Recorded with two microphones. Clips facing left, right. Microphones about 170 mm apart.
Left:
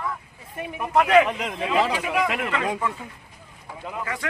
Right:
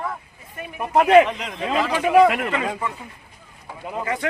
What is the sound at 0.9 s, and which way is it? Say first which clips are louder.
Speech: right 4 dB; 30° right (ahead or behind).